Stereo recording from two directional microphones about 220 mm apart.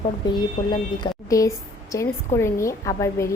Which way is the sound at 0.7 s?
20° left (ahead or behind).